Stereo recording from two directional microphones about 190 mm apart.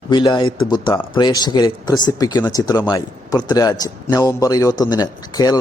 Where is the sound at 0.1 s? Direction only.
25° left (ahead or behind).